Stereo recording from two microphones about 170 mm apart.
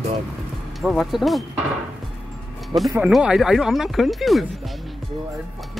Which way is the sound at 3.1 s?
5° right (ahead or behind).